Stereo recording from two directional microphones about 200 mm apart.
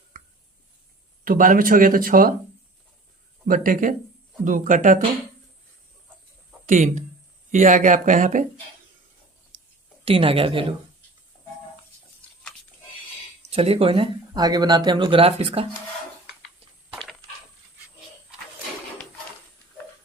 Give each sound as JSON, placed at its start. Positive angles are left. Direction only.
{"t": 1.2, "sound": "speech", "side_deg": -45}
{"t": 3.4, "sound": "speech", "side_deg": -45}
{"t": 6.7, "sound": "speech", "side_deg": -40}
{"t": 10.0, "sound": "speech", "side_deg": -30}
{"t": 13.5, "sound": "speech", "side_deg": -30}